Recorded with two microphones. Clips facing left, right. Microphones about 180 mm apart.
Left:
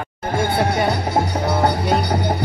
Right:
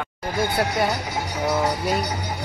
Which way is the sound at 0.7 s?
30° left (ahead or behind).